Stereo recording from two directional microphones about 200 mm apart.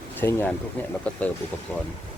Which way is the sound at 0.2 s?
10° left (ahead or behind).